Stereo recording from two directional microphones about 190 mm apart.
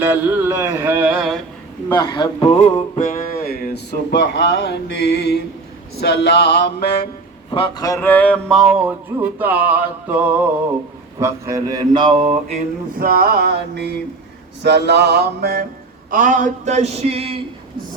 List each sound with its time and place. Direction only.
0.0 s a sound: 10° right (ahead or behind)
1.9 s a man's voice: 20° left (ahead or behind)
3.0 s music: 50° left (ahead or behind)
4.1 s speech: 65° left (ahead or behind)
7.5 s a sound: 25° left (ahead or behind); by 10.4 s 10° right (ahead or behind)
11.2 s mantra: 15° right (ahead or behind); by 12.6 s 35° right (ahead or behind)
13.0 s music: 50° right (ahead or behind)
16.0 s speech: 45° right (ahead or behind)